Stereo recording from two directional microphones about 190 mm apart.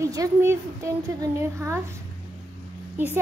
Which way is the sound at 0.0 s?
15° right (ahead or behind).